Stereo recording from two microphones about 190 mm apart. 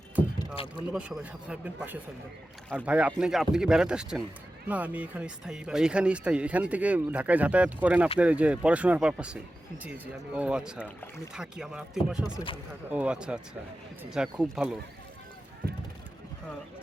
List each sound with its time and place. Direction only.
0.3 s rowboat: 30° left (ahead or behind)
0.9 s speech: 5° right (ahead or behind)